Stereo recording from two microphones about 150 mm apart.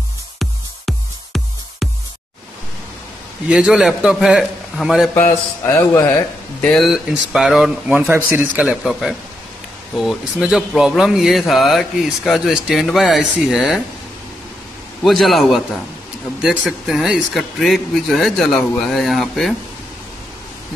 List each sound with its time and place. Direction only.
0.4 s music: centre (ahead or behind)
3.4 s speech: 5° right (ahead or behind)
5.1 s speech: 15° left (ahead or behind)
6.6 s speech: 5° left (ahead or behind)
8.0 s speech: 15° right (ahead or behind)
15.0 s speech: centre (ahead or behind)